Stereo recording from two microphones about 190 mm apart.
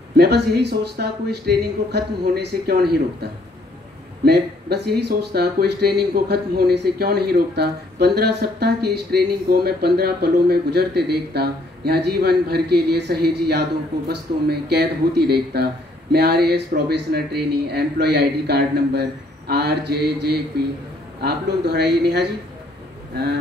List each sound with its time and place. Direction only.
0.1 s speech: 60° right (ahead or behind)